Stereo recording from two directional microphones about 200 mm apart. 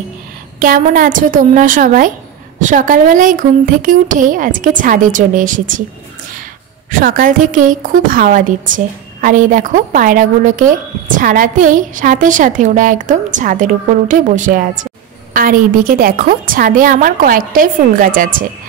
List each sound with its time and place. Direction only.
0.6 s a woman's voice: 45° right (ahead or behind)
6.9 s a woman's voice: 45° right (ahead or behind)